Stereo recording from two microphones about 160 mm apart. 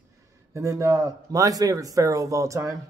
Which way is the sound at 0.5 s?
20° right (ahead or behind).